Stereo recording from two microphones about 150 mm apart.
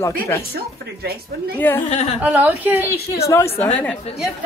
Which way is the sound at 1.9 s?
50° left (ahead or behind).